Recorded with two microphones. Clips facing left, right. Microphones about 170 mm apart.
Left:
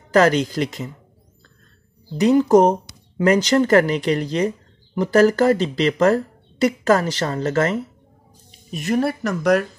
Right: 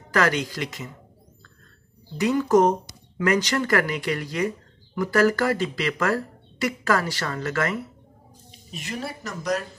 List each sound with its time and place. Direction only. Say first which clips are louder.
0.1 s speech: left 7 dB; 35° left (ahead or behind)
2.2 s speech: left 5 dB; 30° left (ahead or behind)
8.7 s speech: left 12 dB; 50° left (ahead or behind)